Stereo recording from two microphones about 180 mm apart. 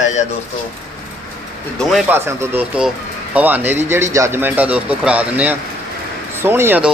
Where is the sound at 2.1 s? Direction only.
15° right (ahead or behind).